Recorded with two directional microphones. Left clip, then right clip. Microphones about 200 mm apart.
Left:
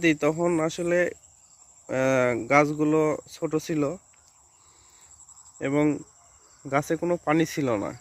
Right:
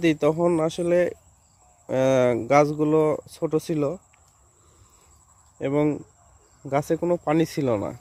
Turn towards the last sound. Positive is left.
turn(degrees=-5)  # may be behind; listen again after turning